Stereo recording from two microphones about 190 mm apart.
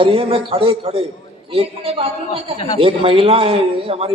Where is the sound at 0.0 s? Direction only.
30° right (ahead or behind).